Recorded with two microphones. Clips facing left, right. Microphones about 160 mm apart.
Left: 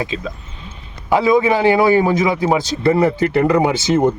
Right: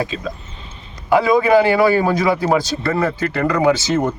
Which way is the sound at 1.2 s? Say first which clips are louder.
Even; 20° left (ahead or behind).